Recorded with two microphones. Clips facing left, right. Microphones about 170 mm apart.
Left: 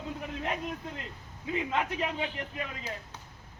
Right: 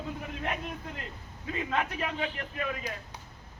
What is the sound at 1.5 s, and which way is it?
Speech, 20° left (ahead or behind).